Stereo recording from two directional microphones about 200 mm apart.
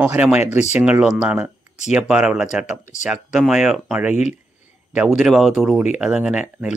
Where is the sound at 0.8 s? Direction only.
5° right (ahead or behind).